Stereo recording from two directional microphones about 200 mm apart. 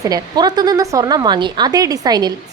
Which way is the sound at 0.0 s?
20° right (ahead or behind).